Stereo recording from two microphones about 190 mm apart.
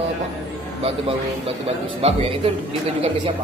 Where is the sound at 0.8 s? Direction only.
30° right (ahead or behind).